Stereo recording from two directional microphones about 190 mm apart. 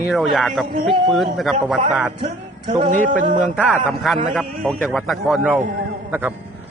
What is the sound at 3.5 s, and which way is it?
A man's voice, 5° right (ahead or behind).